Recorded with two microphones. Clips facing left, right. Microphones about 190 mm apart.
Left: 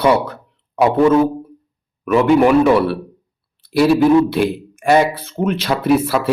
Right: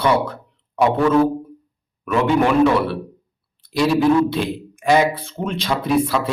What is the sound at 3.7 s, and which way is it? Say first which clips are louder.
Speech: left 4 dB; 5° left (ahead or behind).